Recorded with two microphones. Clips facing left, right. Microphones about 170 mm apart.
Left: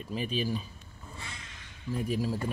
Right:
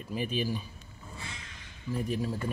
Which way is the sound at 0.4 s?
5° right (ahead or behind).